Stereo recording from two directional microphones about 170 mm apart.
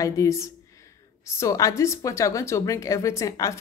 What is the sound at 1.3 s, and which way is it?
A woman's voice, 20° left (ahead or behind).